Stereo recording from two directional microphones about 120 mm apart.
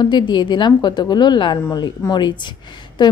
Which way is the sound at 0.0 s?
40° left (ahead or behind).